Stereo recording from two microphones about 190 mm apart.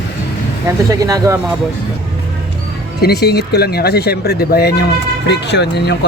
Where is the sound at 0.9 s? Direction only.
20° right (ahead or behind).